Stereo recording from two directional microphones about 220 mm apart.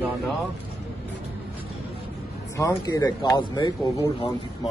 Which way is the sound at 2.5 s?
15° left (ahead or behind).